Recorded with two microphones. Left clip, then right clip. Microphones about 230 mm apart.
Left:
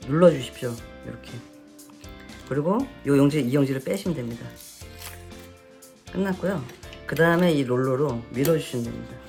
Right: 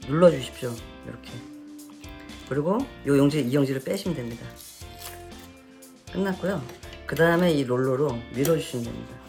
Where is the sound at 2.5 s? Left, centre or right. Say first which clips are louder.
Left 1 dB; left.